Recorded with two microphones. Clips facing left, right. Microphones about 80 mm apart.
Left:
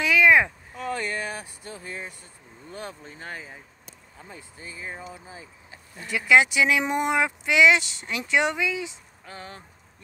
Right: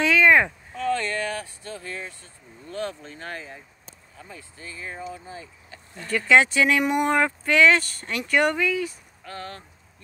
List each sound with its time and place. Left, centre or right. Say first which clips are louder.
0.0 s speech: right 1 dB; centre
4.2 s speech: right 1 dB; left